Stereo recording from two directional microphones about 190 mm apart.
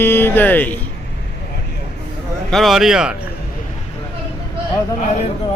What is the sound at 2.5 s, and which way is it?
Speech, centre (ahead or behind).